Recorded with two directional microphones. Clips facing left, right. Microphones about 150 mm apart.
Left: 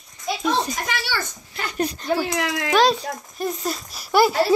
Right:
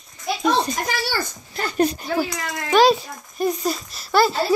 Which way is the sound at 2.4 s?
80° left.